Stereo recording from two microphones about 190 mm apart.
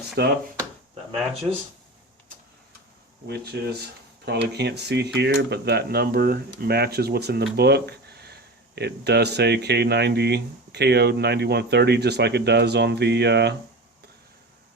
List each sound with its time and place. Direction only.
0.2 s speech: 60° right (ahead or behind)
3.2 s speech: 60° right (ahead or behind)